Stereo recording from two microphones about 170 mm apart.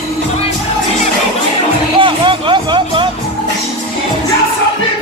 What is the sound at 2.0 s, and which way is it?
Music, 30° right (ahead or behind).